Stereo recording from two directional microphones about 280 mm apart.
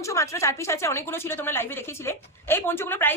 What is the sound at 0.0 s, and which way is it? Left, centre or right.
Speech, centre.